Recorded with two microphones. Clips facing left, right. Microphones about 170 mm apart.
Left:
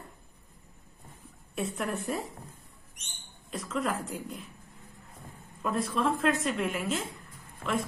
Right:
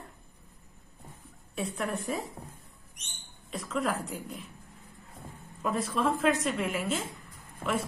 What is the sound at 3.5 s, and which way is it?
A woman's voice, centre (ahead or behind).